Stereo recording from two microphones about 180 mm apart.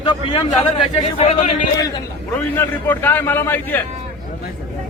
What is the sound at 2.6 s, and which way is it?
A man's voice, 10° left (ahead or behind).